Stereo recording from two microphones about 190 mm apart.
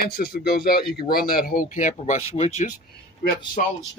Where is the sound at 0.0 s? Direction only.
55° left (ahead or behind); by 2.7 s 35° left (ahead or behind).